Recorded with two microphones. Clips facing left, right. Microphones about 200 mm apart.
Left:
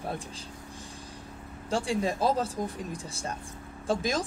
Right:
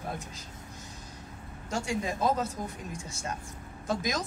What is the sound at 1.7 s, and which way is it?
Speech, 30° left (ahead or behind).